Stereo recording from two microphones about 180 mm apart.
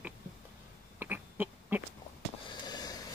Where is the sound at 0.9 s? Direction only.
10° right (ahead or behind).